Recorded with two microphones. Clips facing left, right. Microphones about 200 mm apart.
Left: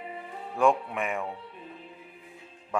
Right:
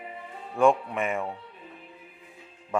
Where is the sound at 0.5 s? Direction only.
Centre (ahead or behind).